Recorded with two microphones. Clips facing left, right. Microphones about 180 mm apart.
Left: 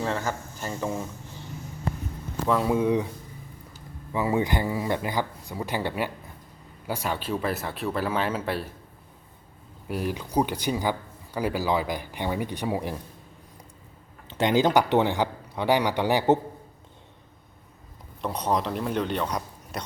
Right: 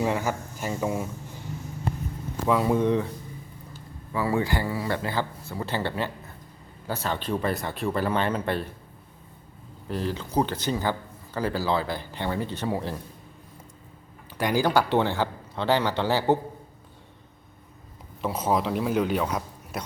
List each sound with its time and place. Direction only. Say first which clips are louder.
0.0 s speech: right 3 dB; 10° right (ahead or behind)
2.5 s speech: right 1 dB; centre (ahead or behind)
4.1 s speech: left 1 dB; 20° left (ahead or behind)
9.9 s speech: even; 10° left (ahead or behind)
14.3 s speech: left 2 dB; 25° left (ahead or behind)
18.2 s speech: right 1 dB; 5° right (ahead or behind)